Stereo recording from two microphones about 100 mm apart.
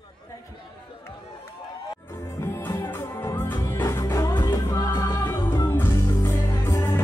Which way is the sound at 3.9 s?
35° left (ahead or behind).